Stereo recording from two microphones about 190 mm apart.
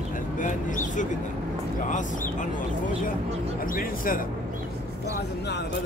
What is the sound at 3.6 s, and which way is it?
Speech, 45° left (ahead or behind).